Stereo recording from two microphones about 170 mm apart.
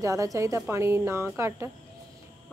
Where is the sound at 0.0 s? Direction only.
20° right (ahead or behind).